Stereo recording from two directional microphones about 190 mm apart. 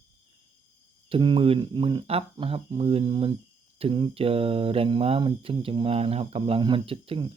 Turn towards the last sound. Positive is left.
turn(degrees=-30)  # may be behind; listen again after turning